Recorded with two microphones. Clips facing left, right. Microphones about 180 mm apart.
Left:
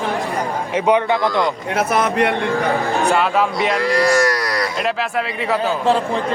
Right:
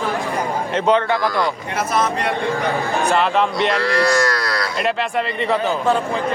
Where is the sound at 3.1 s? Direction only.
5° left (ahead or behind).